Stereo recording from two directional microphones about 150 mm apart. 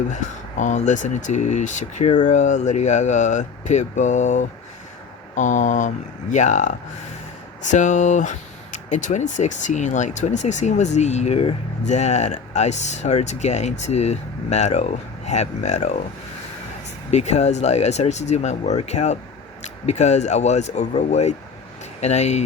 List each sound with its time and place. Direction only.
0.1 s speech: 55° left (ahead or behind)
17.1 s speech: 50° left (ahead or behind)